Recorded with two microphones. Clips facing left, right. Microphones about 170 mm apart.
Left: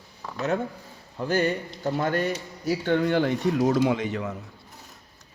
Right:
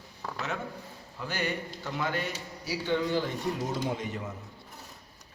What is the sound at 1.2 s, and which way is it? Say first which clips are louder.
A man's voice: left 9 dB; 45° left (ahead or behind).